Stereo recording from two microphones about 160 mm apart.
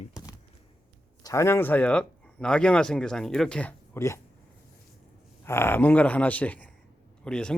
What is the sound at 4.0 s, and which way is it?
Speech, 15° left (ahead or behind).